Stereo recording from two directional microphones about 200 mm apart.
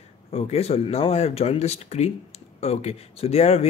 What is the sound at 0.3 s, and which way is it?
A man's voice, 30° left (ahead or behind).